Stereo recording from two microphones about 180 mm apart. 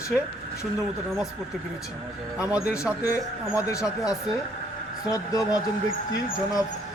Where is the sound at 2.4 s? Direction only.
10° right (ahead or behind).